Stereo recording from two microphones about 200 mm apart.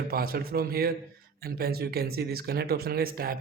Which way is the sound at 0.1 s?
50° right (ahead or behind).